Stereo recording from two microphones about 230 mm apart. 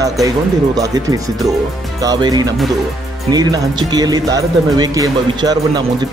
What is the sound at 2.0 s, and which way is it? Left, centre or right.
Speech, centre.